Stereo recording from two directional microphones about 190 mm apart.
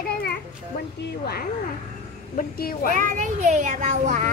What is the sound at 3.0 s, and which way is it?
A child's voice, 40° right (ahead or behind).